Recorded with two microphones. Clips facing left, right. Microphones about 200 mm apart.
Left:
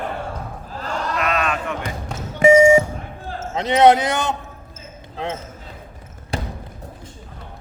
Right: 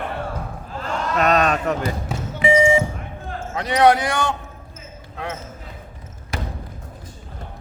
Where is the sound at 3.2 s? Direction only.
25° left (ahead or behind).